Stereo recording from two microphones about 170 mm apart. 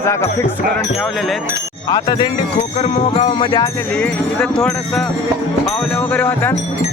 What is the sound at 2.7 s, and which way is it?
Music, 40° left (ahead or behind).